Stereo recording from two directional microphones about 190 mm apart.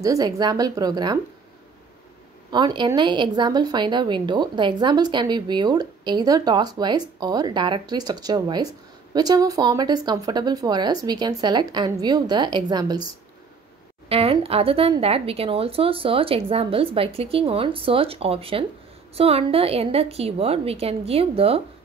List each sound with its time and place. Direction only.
0.0 s speech: 20° right (ahead or behind)
2.5 s speech: 25° right (ahead or behind)
14.0 s a woman's voice: 30° right (ahead or behind)